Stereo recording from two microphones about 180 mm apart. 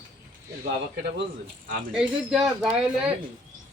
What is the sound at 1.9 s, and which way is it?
Speech, 5° right (ahead or behind).